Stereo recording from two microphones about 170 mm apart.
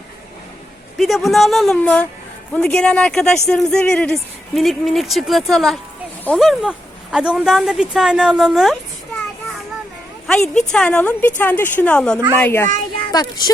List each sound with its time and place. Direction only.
0.9 s a woman's voice: centre (ahead or behind)
10.2 s a woman's voice: 5° left (ahead or behind); by 13.5 s 25° left (ahead or behind)